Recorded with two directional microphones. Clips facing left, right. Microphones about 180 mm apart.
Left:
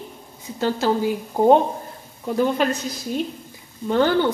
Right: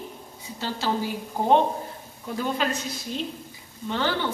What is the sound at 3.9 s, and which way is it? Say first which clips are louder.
Speech: left 8 dB; 45° left (ahead or behind).